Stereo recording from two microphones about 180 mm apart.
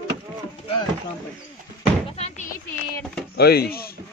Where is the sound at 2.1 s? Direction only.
35° left (ahead or behind).